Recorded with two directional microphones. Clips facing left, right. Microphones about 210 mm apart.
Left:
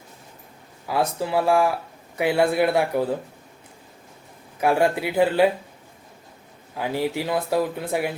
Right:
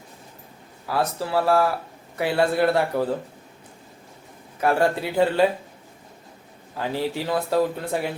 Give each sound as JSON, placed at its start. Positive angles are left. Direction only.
{"t": 0.9, "sound": "speech", "side_deg": 15}
{"t": 4.6, "sound": "speech", "side_deg": 15}
{"t": 6.7, "sound": "speech", "side_deg": 10}